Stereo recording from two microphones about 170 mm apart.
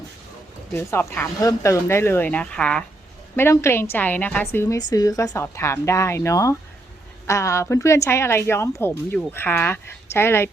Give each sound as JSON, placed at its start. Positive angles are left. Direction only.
{"t": 0.7, "sound": "speech", "side_deg": 15}